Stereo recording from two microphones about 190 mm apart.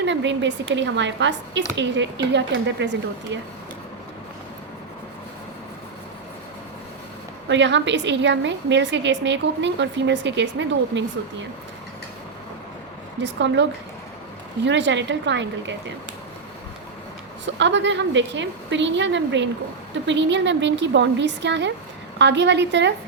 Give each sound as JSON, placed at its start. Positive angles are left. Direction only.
{"t": 0.0, "sound": "a woman's voice", "side_deg": -70}
{"t": 7.4, "sound": "a woman's voice", "side_deg": -70}
{"t": 13.1, "sound": "a woman's voice", "side_deg": -70}
{"t": 17.4, "sound": "a woman's voice", "side_deg": -70}